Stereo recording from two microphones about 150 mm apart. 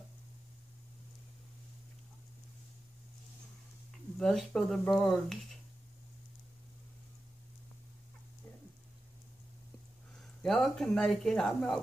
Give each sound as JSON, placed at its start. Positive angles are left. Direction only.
{"t": 4.2, "sound": "speech", "side_deg": 5}
{"t": 10.1, "sound": "speech", "side_deg": 0}